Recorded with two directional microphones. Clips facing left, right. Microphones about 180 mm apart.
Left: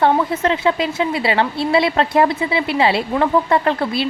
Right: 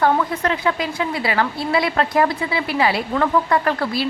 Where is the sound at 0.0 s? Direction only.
25° left (ahead or behind).